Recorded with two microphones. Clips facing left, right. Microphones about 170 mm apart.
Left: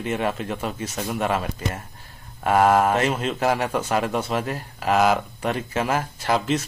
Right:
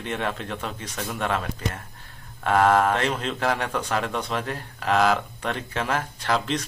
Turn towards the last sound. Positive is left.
turn(degrees=5)  # may be behind; listen again after turning